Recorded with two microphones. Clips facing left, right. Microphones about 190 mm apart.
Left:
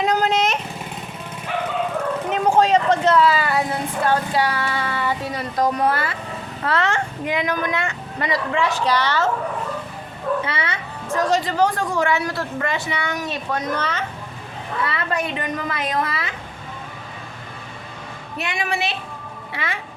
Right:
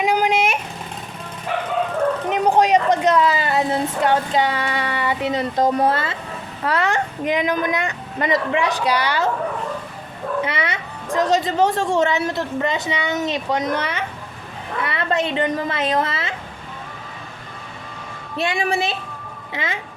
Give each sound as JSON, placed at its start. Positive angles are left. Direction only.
{"t": 0.0, "sound": "vehicle", "side_deg": -10}
{"t": 2.3, "sound": "vehicle", "side_deg": -15}
{"t": 6.7, "sound": "a woman's voice", "side_deg": -15}
{"t": 10.4, "sound": "a woman's voice", "side_deg": -20}
{"t": 18.3, "sound": "a woman's voice", "side_deg": -30}